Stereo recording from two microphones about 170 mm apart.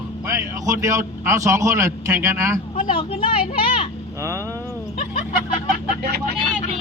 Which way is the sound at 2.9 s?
30° left (ahead or behind).